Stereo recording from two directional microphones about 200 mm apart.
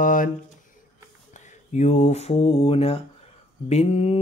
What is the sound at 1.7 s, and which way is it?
Mantra, 35° left (ahead or behind).